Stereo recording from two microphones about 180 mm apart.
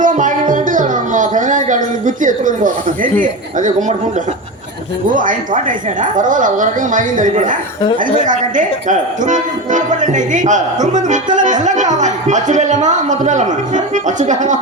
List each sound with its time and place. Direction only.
0.0 s music: 45° right (ahead or behind)
5.0 s speech: 45° right (ahead or behind)